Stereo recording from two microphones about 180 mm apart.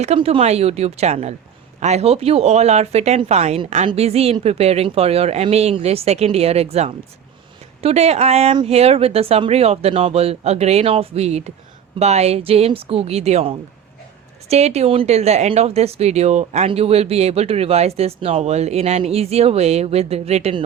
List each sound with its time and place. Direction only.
0.0 s speech: 35° right (ahead or behind)